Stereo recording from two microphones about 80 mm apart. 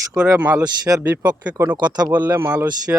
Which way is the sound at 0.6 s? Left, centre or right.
Right.